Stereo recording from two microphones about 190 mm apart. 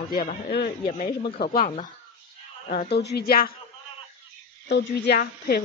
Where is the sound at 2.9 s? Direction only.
60° left (ahead or behind).